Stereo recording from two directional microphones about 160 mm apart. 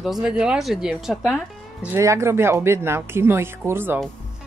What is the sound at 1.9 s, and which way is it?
Speech, 15° right (ahead or behind).